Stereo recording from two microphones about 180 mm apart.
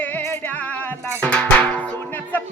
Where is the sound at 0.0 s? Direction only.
10° left (ahead or behind).